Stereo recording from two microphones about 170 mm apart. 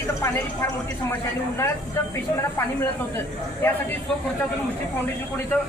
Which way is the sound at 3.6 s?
10° left (ahead or behind).